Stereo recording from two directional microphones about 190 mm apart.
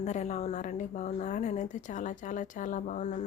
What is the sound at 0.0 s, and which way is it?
A woman's voice, 35° left (ahead or behind).